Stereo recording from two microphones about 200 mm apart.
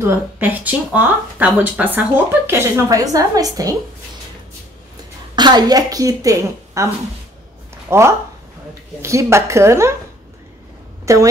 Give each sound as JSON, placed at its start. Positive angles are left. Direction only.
{"t": 0.0, "sound": "speech", "side_deg": -10}
{"t": 5.3, "sound": "speech", "side_deg": -20}
{"t": 7.9, "sound": "speech", "side_deg": -10}
{"t": 11.1, "sound": "speech", "side_deg": -15}